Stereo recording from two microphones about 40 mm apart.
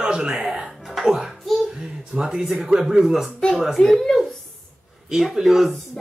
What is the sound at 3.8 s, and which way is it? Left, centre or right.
Speech, left.